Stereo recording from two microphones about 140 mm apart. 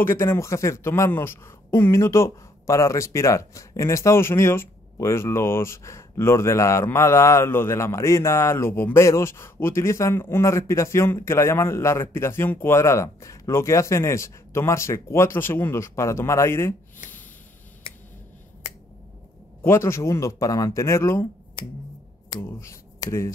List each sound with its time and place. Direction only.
0.0 s speech: 15° left (ahead or behind)
19.6 s speech: 20° left (ahead or behind)
22.4 s speech: 20° left (ahead or behind)